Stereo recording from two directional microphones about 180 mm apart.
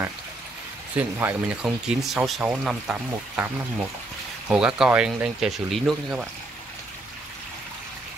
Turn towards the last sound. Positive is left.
turn(degrees=0)  # may be behind; listen again after turning